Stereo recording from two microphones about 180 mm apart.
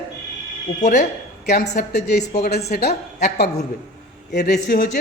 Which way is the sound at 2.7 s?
60° left (ahead or behind).